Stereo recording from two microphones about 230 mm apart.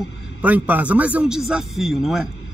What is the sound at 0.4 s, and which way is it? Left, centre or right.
Speech, centre.